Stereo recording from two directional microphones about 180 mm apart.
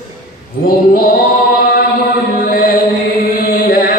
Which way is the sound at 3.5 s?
55° left (ahead or behind).